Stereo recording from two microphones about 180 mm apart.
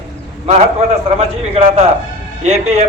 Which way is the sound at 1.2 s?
35° right (ahead or behind).